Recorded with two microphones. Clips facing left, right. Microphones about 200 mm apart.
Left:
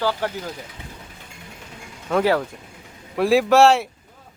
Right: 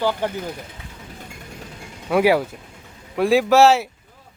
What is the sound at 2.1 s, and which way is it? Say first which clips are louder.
Speech: right 2 dB; 10° right (ahead or behind).